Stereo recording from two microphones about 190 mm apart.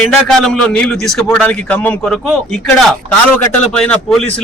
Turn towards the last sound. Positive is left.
turn(degrees=5)  # may be behind; listen again after turning